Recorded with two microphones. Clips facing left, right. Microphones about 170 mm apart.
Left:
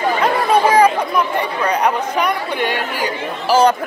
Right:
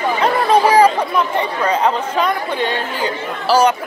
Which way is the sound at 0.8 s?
15° left (ahead or behind).